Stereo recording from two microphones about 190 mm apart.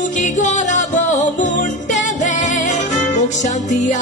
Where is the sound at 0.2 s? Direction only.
40° left (ahead or behind).